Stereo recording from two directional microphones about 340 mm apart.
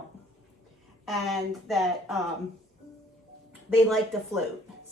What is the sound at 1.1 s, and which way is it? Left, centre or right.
Speech, centre.